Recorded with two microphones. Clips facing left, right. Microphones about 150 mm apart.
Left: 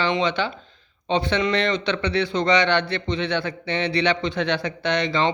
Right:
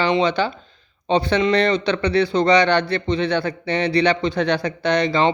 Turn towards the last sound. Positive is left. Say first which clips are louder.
# right 4 dB
turn(degrees=-40)  # may be behind; listen again after turning